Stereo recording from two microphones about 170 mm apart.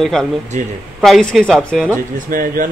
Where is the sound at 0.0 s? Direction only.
Centre (ahead or behind).